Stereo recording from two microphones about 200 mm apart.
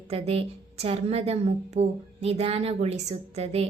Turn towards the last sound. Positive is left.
turn(degrees=-30)  # may be behind; listen again after turning